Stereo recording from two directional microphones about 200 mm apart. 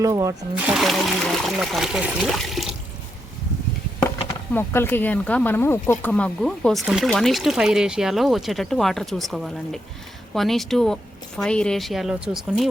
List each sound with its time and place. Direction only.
0.0 s speech: 15° right (ahead or behind)
0.7 s speech: centre (ahead or behind)
4.5 s speech: 10° left (ahead or behind)